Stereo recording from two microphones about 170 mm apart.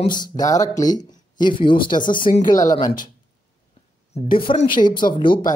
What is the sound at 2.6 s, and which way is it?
Speech, 20° left (ahead or behind).